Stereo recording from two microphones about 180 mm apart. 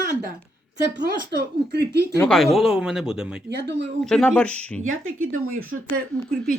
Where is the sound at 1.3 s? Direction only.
65° right (ahead or behind).